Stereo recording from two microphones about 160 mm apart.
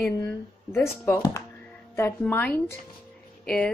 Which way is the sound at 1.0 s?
15° left (ahead or behind).